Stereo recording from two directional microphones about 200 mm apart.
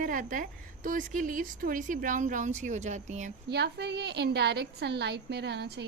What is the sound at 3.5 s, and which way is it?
A woman's voice, 55° right (ahead or behind).